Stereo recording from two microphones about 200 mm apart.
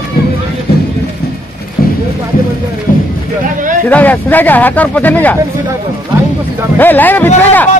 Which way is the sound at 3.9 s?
10° left (ahead or behind).